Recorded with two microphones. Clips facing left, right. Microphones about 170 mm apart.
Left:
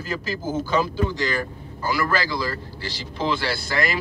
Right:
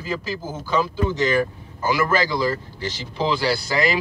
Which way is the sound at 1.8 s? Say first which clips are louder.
Right 3 dB; 20° right (ahead or behind).